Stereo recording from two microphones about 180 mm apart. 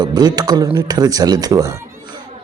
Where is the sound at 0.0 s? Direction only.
20° right (ahead or behind).